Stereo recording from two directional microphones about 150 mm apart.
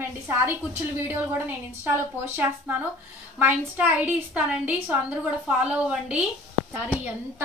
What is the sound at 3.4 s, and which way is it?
A woman's voice, 15° right (ahead or behind).